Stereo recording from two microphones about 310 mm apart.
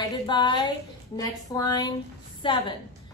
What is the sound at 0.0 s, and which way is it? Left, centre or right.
A woman's voice, centre.